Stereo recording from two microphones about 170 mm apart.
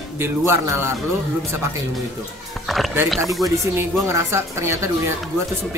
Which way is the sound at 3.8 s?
15° right (ahead or behind).